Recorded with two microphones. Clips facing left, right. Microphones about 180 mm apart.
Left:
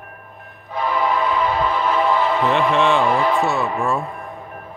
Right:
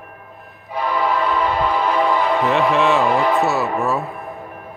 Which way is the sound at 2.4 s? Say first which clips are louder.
Right 1 dB; centre (ahead or behind).